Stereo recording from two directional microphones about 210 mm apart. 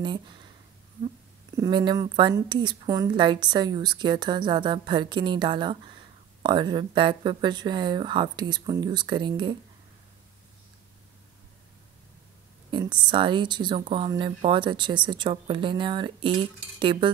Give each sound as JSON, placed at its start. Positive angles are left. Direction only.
{"t": 0.0, "sound": "a woman's voice", "side_deg": -20}
{"t": 1.6, "sound": "a woman's voice", "side_deg": -20}
{"t": 12.7, "sound": "a woman's voice", "side_deg": -20}